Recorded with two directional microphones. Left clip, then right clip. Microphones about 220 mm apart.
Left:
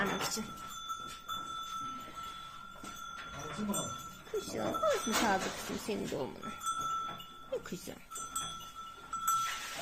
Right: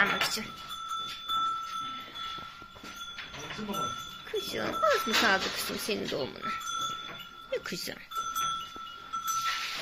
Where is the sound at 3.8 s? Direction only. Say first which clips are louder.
Right 6 dB; centre (ahead or behind).